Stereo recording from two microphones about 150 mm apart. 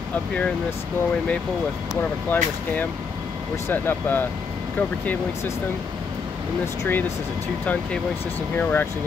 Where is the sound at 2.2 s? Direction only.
10° left (ahead or behind).